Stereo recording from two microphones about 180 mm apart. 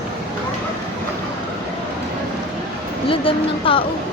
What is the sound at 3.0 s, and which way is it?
Speech, 30° left (ahead or behind).